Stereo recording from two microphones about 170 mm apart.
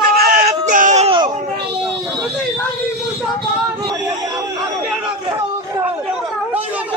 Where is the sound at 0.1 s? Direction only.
65° right (ahead or behind).